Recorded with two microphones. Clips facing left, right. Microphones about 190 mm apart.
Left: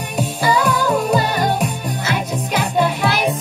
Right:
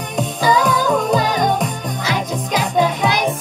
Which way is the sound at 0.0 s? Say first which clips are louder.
Right 1 dB; 10° left (ahead or behind).